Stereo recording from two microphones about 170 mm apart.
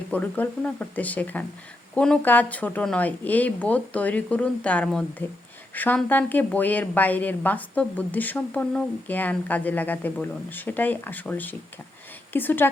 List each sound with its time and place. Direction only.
0.1 s a woman's voice: 10° left (ahead or behind)